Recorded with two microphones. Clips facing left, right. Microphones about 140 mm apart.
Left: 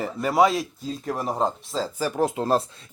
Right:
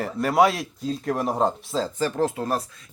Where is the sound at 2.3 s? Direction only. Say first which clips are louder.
Left 4 dB; 25° left (ahead or behind).